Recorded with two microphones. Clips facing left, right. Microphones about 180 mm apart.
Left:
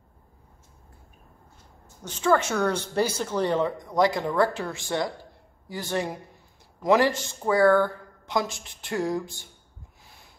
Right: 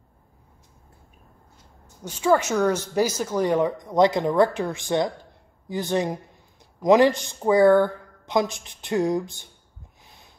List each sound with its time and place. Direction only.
2.0 s a woman's voice: 10° right (ahead or behind)